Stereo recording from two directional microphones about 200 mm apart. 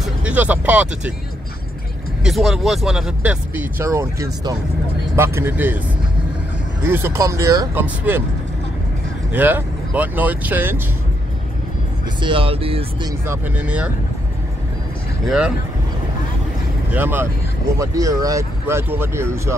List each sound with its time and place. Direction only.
0.0 s speech: 5° right (ahead or behind)
2.2 s speech: centre (ahead or behind)
6.8 s speech: 10° right (ahead or behind)
9.3 s speech: 10° right (ahead or behind)
12.2 s speech: 25° right (ahead or behind)
13.2 s speech: 10° right (ahead or behind)
15.2 s speech: 5° right (ahead or behind)
16.9 s speech: 10° right (ahead or behind)